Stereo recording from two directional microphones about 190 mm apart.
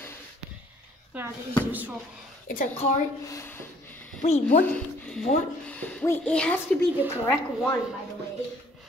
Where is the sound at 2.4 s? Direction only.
45° left (ahead or behind).